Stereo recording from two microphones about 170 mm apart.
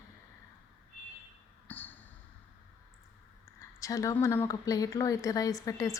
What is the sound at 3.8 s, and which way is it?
Speech, 20° left (ahead or behind).